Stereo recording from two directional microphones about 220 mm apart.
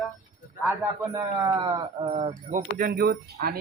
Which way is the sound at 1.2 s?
20° right (ahead or behind).